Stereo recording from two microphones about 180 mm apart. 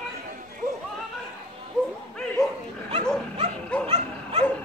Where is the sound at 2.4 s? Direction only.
Centre (ahead or behind).